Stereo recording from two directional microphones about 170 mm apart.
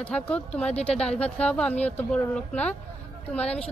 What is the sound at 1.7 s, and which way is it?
Speech, 40° left (ahead or behind).